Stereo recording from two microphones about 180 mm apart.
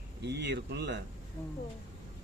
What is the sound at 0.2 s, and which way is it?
Speech, 70° right (ahead or behind).